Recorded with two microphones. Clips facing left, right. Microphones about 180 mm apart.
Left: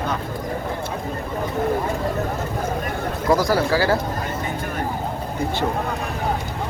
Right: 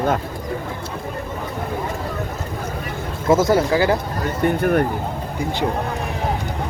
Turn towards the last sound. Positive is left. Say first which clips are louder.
# right 10 dB
turn(degrees=-60)  # may be behind; listen again after turning